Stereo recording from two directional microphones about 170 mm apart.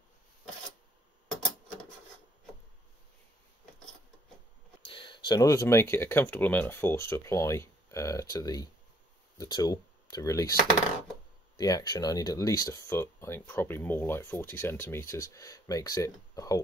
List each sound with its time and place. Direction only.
4.9 s speech: 30° left (ahead or behind)